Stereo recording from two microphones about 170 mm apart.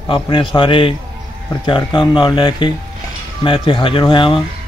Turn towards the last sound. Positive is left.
turn(degrees=30)  # may be behind; listen again after turning